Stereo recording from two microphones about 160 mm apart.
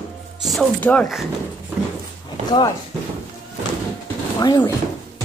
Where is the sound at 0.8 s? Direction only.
10° left (ahead or behind).